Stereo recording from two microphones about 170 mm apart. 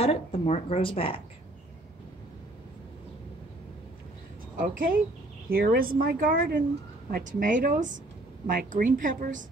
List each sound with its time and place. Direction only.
0.0 s speech: 35° left (ahead or behind)
4.6 s a woman's voice: 55° right (ahead or behind)